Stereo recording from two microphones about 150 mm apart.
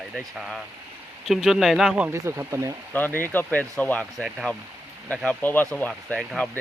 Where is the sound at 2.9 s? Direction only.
10° left (ahead or behind).